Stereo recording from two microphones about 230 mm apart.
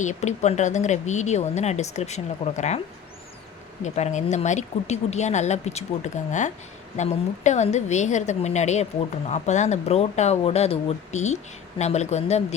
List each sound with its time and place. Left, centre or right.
0.0 s speech: left
3.8 s speech: left